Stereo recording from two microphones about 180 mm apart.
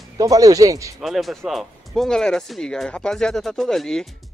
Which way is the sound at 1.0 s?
Centre (ahead or behind).